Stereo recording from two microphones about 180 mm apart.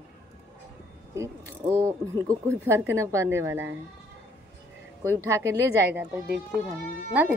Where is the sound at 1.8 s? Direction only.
15° right (ahead or behind).